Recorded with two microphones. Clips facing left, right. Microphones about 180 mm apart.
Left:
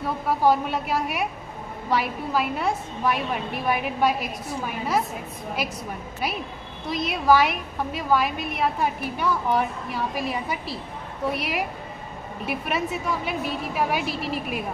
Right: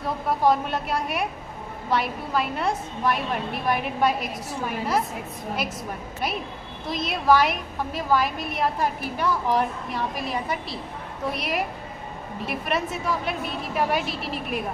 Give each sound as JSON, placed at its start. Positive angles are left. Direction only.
{"t": 0.3, "sound": "a woman's voice", "side_deg": 0}
{"t": 6.9, "sound": "a woman's voice", "side_deg": 0}